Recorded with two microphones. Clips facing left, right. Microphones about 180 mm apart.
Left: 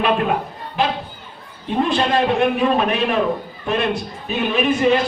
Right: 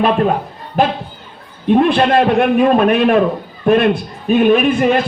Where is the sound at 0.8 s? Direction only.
50° right (ahead or behind).